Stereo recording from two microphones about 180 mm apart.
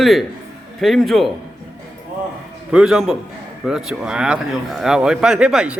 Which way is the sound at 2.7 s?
Centre (ahead or behind).